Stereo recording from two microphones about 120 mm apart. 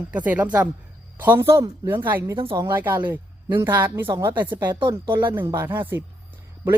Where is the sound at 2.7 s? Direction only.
15° right (ahead or behind).